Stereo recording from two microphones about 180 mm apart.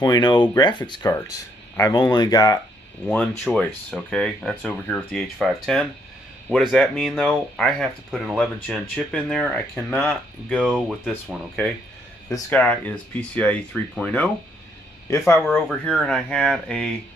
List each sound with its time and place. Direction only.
0.0 s speech: 25° left (ahead or behind)
3.4 s speech: centre (ahead or behind)
10.7 s speech: 5° right (ahead or behind)
12.3 s speech: 10° left (ahead or behind)
15.0 s speech: 15° left (ahead or behind)